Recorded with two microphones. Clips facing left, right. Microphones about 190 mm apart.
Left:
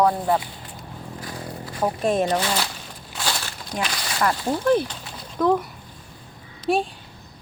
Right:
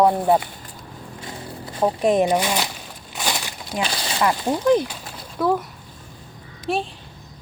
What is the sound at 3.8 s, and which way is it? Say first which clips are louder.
Speech: right 2 dB; 30° right (ahead or behind).